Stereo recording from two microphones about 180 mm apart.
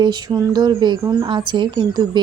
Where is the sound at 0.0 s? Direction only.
20° right (ahead or behind).